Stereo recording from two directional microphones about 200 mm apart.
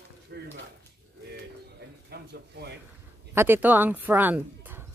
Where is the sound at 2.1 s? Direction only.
55° right (ahead or behind).